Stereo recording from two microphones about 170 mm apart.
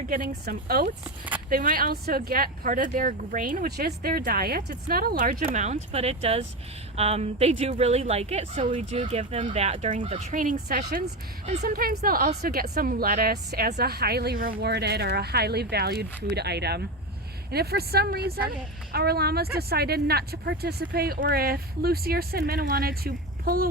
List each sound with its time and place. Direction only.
0.1 s speech: 60° right (ahead or behind)
1.0 s speech: 10° right (ahead or behind)
1.5 s speech: 55° right (ahead or behind)
5.5 s a woman's voice: 40° right (ahead or behind)
10.4 s a woman's voice: 50° right (ahead or behind)